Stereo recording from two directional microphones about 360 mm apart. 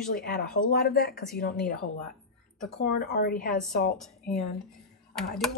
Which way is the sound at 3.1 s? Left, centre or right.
Left.